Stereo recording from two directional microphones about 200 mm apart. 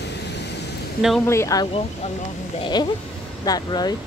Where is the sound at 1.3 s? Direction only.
15° left (ahead or behind).